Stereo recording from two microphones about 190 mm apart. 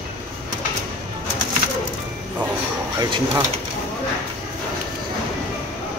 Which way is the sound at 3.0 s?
20° right (ahead or behind).